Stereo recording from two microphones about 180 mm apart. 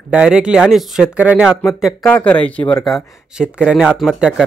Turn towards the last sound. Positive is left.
turn(degrees=-5)  # may be behind; listen again after turning